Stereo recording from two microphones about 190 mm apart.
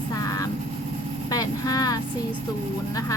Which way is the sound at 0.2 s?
20° left (ahead or behind).